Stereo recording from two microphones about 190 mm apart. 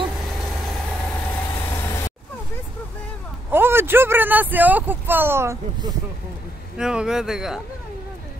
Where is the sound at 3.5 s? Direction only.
10° right (ahead or behind).